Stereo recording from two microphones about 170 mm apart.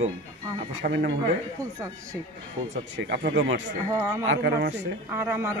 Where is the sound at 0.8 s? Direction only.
70° right (ahead or behind).